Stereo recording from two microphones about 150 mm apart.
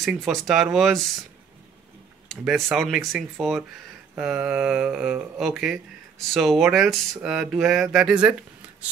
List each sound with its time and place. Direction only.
0.0 s speech: centre (ahead or behind)
2.2 s speech: centre (ahead or behind)